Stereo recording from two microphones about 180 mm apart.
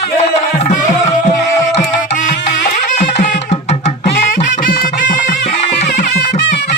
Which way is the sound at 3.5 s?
40° left (ahead or behind).